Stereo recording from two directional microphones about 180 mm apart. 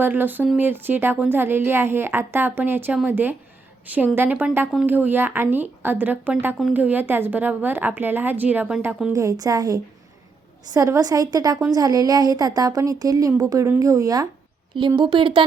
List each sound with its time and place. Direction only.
0.0 s speech: 10° right (ahead or behind)
9.1 s a woman's voice: 20° right (ahead or behind)